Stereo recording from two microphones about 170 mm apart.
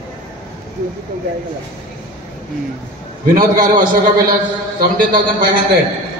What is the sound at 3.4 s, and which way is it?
A man's voice, 50° right (ahead or behind).